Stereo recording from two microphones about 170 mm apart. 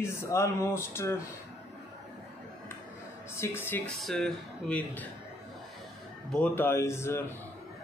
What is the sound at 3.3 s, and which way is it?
A man's voice, 15° left (ahead or behind).